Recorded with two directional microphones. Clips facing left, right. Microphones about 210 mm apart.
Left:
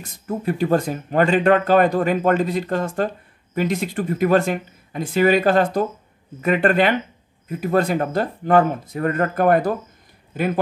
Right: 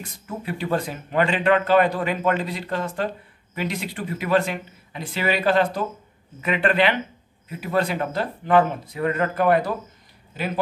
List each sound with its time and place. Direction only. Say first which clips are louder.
0.0 s speech: left 7 dB; 45° left (ahead or behind)